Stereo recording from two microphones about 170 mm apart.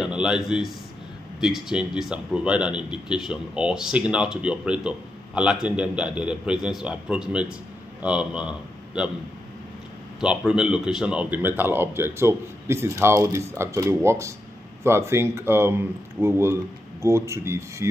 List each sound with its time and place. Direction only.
0.0 s a man's voice: 5° right (ahead or behind)
10.2 s a man's voice: 5° right (ahead or behind)